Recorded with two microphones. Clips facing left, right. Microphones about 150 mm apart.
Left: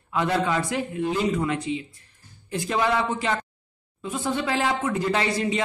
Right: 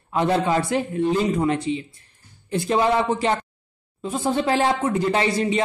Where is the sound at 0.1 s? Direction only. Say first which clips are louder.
Right 3 dB; 30° right (ahead or behind).